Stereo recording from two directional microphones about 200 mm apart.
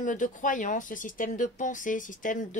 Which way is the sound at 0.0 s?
40° left (ahead or behind).